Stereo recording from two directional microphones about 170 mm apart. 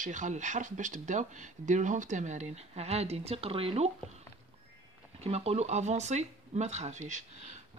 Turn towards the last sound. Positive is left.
turn(degrees=-45)  # may be behind; listen again after turning